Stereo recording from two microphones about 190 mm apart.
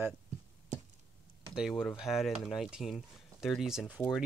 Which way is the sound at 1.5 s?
Centre (ahead or behind).